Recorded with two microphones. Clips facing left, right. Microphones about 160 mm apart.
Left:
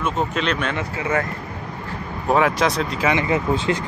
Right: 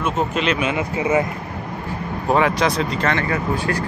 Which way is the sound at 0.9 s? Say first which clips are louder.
Right 5 dB; 20° right (ahead or behind).